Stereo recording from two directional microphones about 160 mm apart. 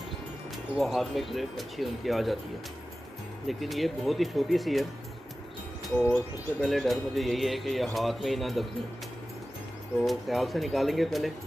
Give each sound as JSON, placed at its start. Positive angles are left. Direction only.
{"t": 0.7, "sound": "speech", "side_deg": 0}
{"t": 3.4, "sound": "speech", "side_deg": 0}
{"t": 5.9, "sound": "speech", "side_deg": 10}
{"t": 10.0, "sound": "speech", "side_deg": 0}